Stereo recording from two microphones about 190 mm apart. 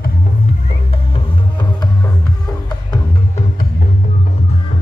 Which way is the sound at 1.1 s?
25° left (ahead or behind).